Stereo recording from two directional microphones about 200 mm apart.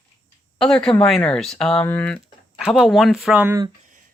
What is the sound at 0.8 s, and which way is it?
Speech, 5° left (ahead or behind).